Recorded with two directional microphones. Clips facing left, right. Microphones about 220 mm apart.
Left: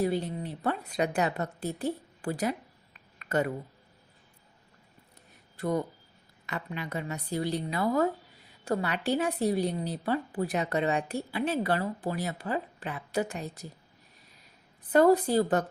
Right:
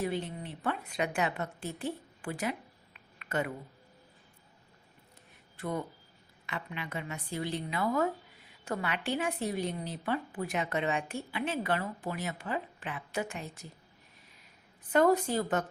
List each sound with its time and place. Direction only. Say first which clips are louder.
0.0 s a woman's voice: left 5 dB; 40° left (ahead or behind)
3.2 s a sound: left 5 dB; 40° left (ahead or behind)
5.5 s a woman's voice: left 6 dB; 40° left (ahead or behind)
14.9 s a woman's voice: left 4 dB; 35° left (ahead or behind)